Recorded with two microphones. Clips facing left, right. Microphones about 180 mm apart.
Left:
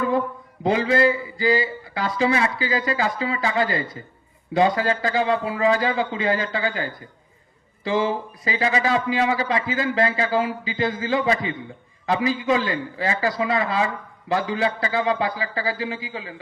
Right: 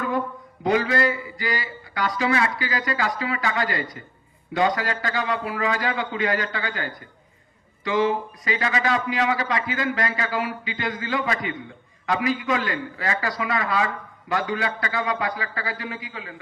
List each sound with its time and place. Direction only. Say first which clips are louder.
0.6 s a man's voice: left 3 dB; 25° left (ahead or behind)